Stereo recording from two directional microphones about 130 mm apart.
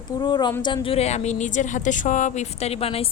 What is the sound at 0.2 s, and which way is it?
A woman's voice, 35° left (ahead or behind).